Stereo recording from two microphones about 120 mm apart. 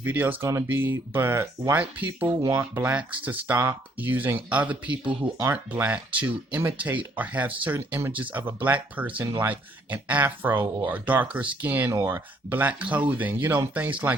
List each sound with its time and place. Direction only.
0.0 s speech: 15° right (ahead or behind)